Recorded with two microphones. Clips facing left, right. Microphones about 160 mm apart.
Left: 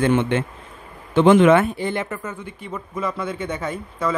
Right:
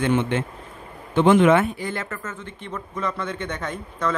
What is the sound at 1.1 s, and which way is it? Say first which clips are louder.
Speech: left 3 dB; 90° left.